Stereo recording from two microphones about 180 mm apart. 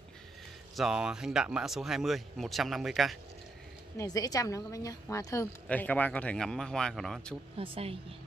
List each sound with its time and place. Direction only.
0.7 s speech: 5° right (ahead or behind)
4.0 s a woman's voice: 20° left (ahead or behind); by 7.3 s centre (ahead or behind)
7.5 s speech: 30° right (ahead or behind)